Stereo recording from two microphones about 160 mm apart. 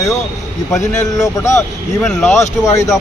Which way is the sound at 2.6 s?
20° left (ahead or behind).